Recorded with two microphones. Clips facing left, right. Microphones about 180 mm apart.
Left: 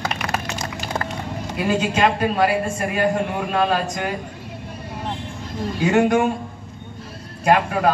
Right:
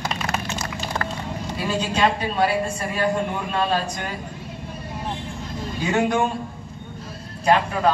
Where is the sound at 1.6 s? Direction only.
55° left (ahead or behind).